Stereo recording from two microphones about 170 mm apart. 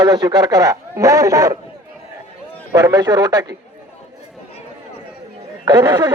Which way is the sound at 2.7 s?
20° right (ahead or behind).